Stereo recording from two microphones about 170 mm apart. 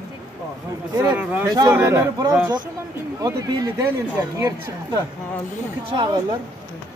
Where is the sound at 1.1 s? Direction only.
10° right (ahead or behind).